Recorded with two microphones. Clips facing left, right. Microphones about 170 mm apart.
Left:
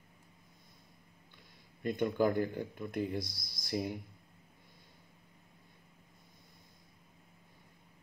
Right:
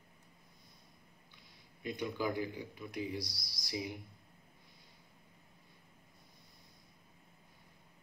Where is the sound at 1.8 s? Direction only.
50° left (ahead or behind).